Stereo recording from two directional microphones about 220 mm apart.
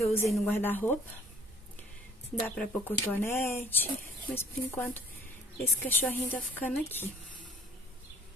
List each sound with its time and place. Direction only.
0.0 s speech: 10° left (ahead or behind)
2.4 s speech: 5° left (ahead or behind)